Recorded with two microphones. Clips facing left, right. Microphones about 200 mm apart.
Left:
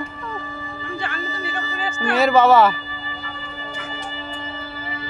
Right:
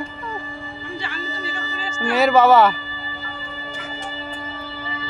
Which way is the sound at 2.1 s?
Centre (ahead or behind).